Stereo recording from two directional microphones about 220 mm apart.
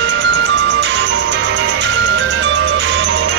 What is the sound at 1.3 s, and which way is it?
Music, 55° right (ahead or behind).